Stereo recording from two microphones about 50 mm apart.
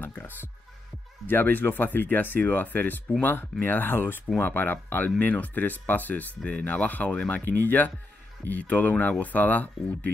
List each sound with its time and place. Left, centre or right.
0.0 s music: left
1.2 s speech: left